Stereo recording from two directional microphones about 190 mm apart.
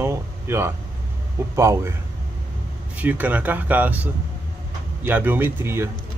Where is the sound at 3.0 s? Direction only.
10° right (ahead or behind).